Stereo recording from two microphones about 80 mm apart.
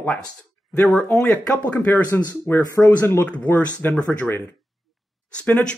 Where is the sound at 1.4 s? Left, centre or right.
Centre.